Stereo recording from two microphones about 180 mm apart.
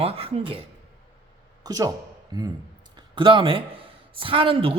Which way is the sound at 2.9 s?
25° right (ahead or behind).